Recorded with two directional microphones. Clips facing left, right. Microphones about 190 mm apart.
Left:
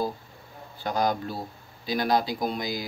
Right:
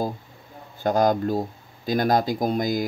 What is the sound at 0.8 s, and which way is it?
Speech, 50° right (ahead or behind).